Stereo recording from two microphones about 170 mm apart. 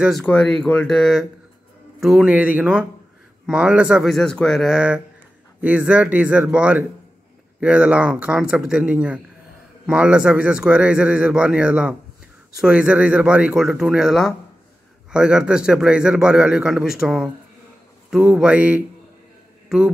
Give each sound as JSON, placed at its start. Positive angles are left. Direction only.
{"t": 0.0, "sound": "a man's voice", "side_deg": 0}